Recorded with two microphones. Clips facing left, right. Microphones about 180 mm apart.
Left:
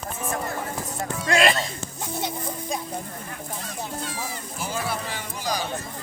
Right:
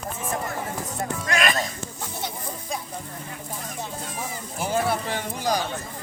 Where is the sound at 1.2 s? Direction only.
30° left (ahead or behind).